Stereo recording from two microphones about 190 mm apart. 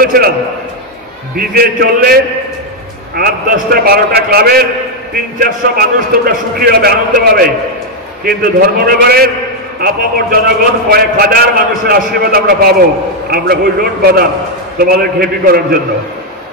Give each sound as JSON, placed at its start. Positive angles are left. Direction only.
{"t": 0.0, "sound": "a man's voice", "side_deg": -50}
{"t": 1.3, "sound": "a man's voice", "side_deg": -50}
{"t": 8.2, "sound": "a man's voice", "side_deg": -55}